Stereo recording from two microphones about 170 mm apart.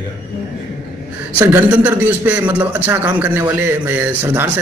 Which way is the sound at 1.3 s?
10° right (ahead or behind).